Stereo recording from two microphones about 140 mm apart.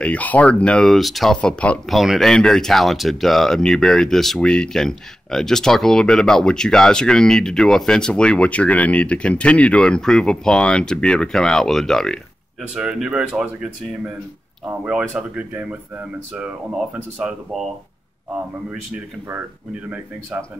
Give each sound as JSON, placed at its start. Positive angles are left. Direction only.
{"t": 0.0, "sound": "speech", "side_deg": 10}